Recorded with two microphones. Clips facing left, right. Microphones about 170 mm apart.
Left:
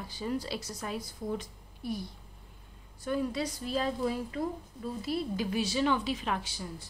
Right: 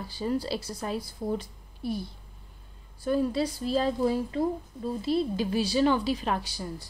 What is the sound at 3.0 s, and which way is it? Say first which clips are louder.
A woman's voice: right 5 dB; 30° right (ahead or behind).